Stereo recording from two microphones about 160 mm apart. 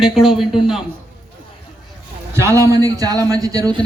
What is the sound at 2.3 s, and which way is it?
A man's voice, 15° right (ahead or behind).